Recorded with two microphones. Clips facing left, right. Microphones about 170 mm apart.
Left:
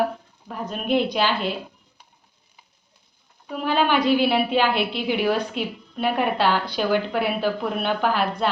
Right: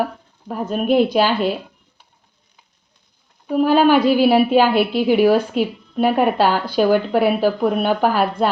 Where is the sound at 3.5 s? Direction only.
45° right (ahead or behind).